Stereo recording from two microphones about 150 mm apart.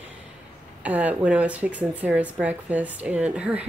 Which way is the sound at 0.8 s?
10° right (ahead or behind).